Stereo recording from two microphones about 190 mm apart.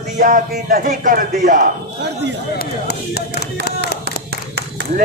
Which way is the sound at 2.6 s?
60° left (ahead or behind).